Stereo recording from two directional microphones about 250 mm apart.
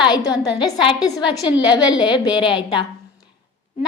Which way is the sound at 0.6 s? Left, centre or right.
Centre.